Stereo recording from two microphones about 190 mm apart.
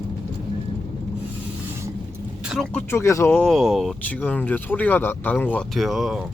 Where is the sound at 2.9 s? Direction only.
15° left (ahead or behind).